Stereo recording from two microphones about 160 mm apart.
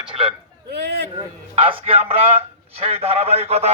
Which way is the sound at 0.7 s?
90° right.